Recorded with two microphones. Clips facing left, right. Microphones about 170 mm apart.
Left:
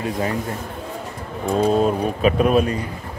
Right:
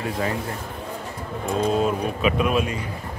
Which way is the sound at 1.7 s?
40° left (ahead or behind).